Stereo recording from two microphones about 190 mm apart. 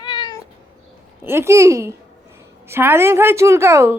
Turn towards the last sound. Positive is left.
turn(degrees=-15)  # may be behind; listen again after turning